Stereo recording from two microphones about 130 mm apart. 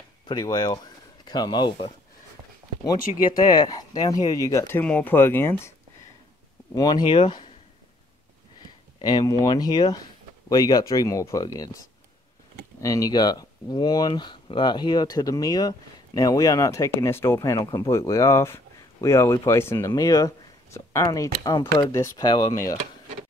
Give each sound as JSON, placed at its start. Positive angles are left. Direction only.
{"t": 0.3, "sound": "speech", "side_deg": 30}
{"t": 3.3, "sound": "speech", "side_deg": 30}
{"t": 6.7, "sound": "speech", "side_deg": 30}
{"t": 9.0, "sound": "speech", "side_deg": 30}
{"t": 12.8, "sound": "speech", "side_deg": 25}
{"t": 17.4, "sound": "speech", "side_deg": 30}